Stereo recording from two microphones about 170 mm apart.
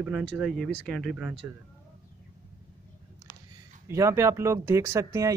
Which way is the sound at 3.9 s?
15° right (ahead or behind).